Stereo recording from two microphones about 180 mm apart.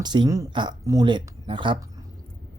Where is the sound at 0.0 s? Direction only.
25° right (ahead or behind).